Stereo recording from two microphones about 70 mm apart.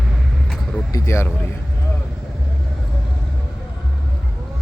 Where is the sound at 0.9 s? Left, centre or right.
Left.